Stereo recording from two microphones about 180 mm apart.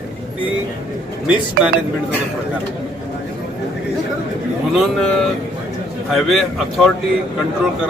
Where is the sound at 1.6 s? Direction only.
60° right (ahead or behind).